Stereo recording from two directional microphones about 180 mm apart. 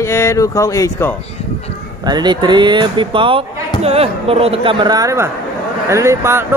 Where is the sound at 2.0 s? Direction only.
25° right (ahead or behind).